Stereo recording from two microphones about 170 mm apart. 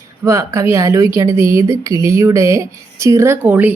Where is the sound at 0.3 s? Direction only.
15° right (ahead or behind).